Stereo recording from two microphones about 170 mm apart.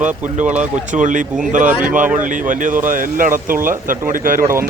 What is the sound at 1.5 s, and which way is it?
Speech, 50° right (ahead or behind).